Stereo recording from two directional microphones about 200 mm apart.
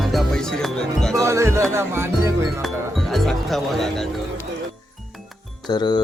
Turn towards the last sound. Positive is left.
turn(degrees=20)  # may be behind; listen again after turning